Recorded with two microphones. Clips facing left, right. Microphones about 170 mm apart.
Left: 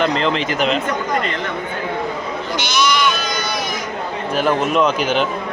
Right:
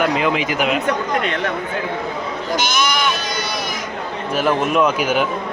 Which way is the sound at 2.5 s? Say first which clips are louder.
Left 1 dB; 50° right (ahead or behind).